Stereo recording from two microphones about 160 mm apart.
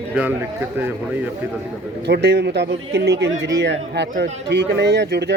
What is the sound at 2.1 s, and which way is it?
A man's voice, 90° right.